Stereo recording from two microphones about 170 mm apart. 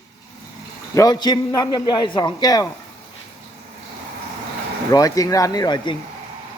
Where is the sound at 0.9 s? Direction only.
25° left (ahead or behind).